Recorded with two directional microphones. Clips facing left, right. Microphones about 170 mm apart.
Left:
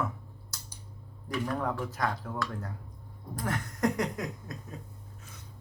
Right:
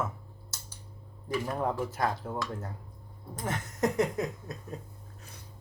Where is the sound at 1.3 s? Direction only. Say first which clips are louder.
Right 1 dB; 25° right (ahead or behind).